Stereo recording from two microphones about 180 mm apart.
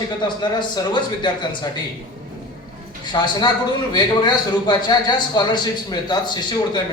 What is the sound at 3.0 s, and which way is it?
A man's voice, 25° left (ahead or behind).